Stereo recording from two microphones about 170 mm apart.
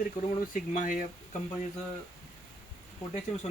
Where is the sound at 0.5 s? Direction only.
50° left (ahead or behind).